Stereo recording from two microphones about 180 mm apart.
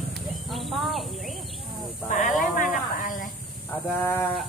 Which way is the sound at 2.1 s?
45° left (ahead or behind).